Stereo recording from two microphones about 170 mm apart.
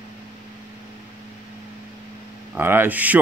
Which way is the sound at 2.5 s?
10° right (ahead or behind).